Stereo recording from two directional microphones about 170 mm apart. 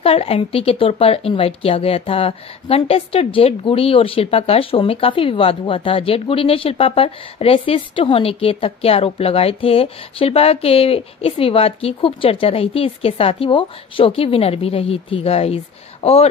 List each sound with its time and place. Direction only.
0.0 s speech: 35° left (ahead or behind)